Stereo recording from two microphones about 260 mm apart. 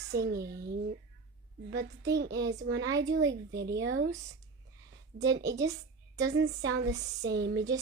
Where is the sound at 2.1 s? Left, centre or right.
Right.